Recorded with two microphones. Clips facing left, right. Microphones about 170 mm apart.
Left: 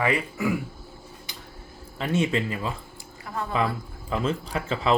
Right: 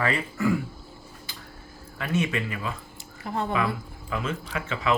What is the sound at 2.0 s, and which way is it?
Speech, 30° left (ahead or behind).